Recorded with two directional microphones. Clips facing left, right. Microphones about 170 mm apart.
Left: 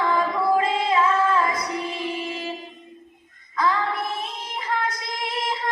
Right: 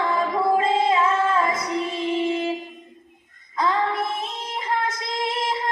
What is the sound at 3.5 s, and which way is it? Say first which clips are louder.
Music: even; 25° right (ahead or behind).